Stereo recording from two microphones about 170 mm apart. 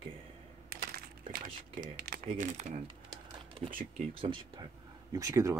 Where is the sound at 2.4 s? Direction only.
35° right (ahead or behind).